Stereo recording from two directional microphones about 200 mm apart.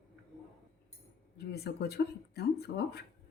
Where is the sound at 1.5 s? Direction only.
55° left (ahead or behind).